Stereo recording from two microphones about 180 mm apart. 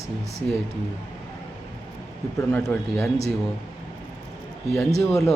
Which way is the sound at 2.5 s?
10° left (ahead or behind).